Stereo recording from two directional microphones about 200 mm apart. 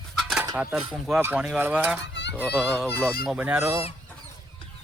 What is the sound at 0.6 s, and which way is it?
A child's voice, 10° right (ahead or behind).